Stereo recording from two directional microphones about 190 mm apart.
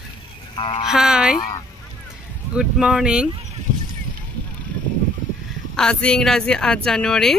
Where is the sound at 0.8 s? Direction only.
5° right (ahead or behind).